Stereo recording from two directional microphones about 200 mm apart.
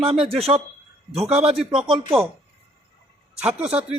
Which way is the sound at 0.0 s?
30° right (ahead or behind).